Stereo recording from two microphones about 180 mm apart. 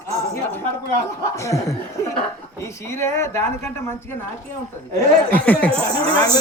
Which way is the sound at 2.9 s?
15° left (ahead or behind).